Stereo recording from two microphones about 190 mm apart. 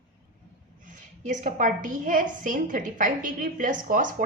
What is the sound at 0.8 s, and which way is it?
A woman's voice, 40° right (ahead or behind).